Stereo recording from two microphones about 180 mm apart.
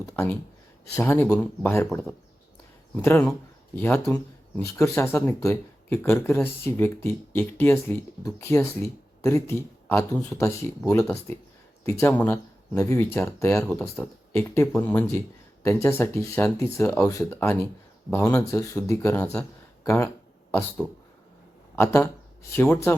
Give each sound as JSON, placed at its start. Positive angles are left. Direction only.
{"t": 0.0, "sound": "speech", "side_deg": 15}
{"t": 20.8, "sound": "speech", "side_deg": -10}
{"t": 21.8, "sound": "speech", "side_deg": 15}